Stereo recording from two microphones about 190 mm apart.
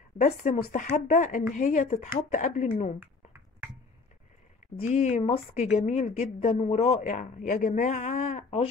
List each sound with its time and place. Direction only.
0.2 s a woman's voice: 40° left (ahead or behind)
3.0 s a sound: 10° right (ahead or behind)
4.7 s a woman's voice: 35° left (ahead or behind)